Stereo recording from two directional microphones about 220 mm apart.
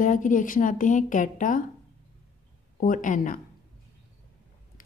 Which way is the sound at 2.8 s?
35° left (ahead or behind).